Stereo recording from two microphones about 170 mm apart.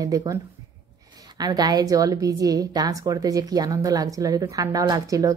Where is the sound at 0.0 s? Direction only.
20° right (ahead or behind).